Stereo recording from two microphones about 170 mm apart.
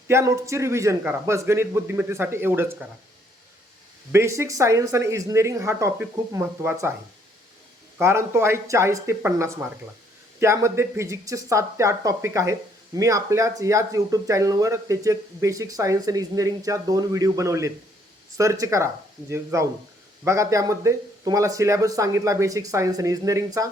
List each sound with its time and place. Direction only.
0.1 s speech: 15° right (ahead or behind)
4.1 s speech: 15° right (ahead or behind)
7.9 s speech: 15° right (ahead or behind)